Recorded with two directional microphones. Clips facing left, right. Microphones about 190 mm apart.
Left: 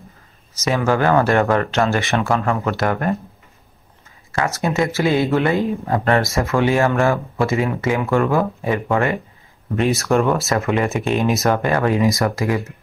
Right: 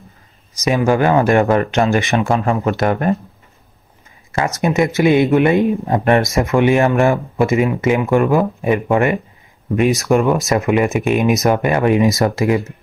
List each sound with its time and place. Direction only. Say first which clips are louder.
0.6 s speech: right 3 dB; 15° right (ahead or behind)
4.3 s speech: right 3 dB; 20° right (ahead or behind)